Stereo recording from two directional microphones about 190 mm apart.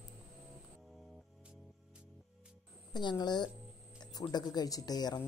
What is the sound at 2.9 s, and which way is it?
Speech, 25° left (ahead or behind).